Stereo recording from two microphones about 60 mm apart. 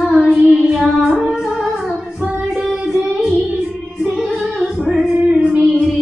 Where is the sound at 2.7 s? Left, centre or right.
Centre.